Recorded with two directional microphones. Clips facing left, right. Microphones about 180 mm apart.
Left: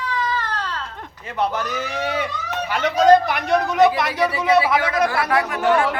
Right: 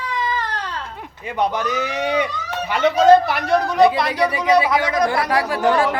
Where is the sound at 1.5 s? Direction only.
10° right (ahead or behind).